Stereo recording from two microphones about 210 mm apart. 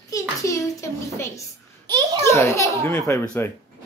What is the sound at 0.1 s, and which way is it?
A child's voice, 15° left (ahead or behind).